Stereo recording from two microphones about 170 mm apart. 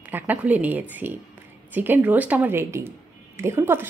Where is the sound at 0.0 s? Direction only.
10° right (ahead or behind).